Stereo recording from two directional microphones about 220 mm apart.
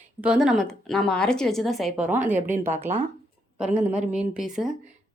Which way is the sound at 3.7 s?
30° right (ahead or behind).